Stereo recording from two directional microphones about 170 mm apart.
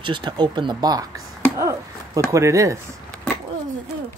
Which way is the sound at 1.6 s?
20° right (ahead or behind).